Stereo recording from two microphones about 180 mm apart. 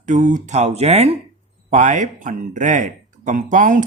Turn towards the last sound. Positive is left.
turn(degrees=-45)  # may be behind; listen again after turning